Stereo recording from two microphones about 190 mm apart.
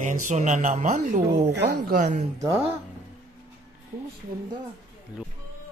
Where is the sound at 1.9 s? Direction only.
40° right (ahead or behind).